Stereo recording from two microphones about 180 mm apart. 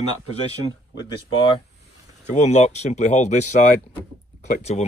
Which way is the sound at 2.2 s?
40° left (ahead or behind).